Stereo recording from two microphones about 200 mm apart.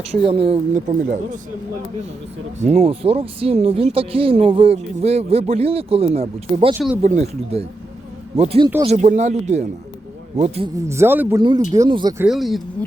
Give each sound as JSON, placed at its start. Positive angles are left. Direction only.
{"t": 0.3, "sound": "speech", "side_deg": -30}
{"t": 1.0, "sound": "speech", "side_deg": -40}
{"t": 2.6, "sound": "speech", "side_deg": -30}
{"t": 6.7, "sound": "speech", "side_deg": -10}
{"t": 7.0, "sound": "speech", "side_deg": -35}
{"t": 10.8, "sound": "speech", "side_deg": -15}
{"t": 12.2, "sound": "speech", "side_deg": 0}